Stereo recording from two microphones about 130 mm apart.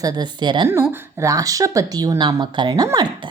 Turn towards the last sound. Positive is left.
turn(degrees=-30)  # may be behind; listen again after turning